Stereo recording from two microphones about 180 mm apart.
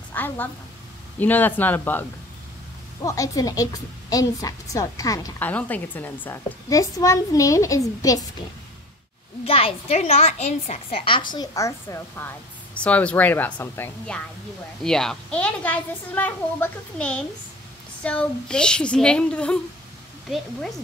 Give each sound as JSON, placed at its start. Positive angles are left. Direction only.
{"t": 0.1, "sound": "a woman's voice", "side_deg": 10}
{"t": 5.5, "sound": "a woman's voice", "side_deg": 10}
{"t": 9.4, "sound": "a woman's voice", "side_deg": 30}